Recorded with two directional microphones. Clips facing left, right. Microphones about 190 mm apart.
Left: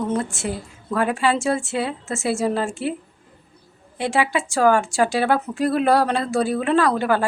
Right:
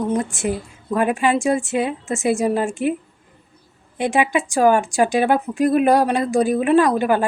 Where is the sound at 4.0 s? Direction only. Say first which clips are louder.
Right 3 dB; 20° right (ahead or behind).